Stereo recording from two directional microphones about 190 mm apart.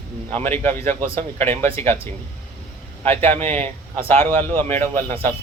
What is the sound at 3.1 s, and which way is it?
Speech, 35° right (ahead or behind).